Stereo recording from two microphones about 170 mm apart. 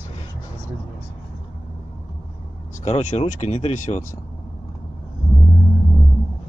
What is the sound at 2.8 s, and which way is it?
Speech, 35° left (ahead or behind).